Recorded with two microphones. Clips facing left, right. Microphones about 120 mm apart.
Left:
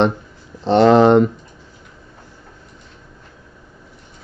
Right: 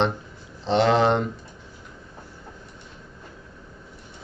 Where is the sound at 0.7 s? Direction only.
50° left (ahead or behind).